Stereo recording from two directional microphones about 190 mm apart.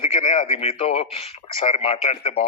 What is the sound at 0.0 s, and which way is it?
Speech, 30° left (ahead or behind).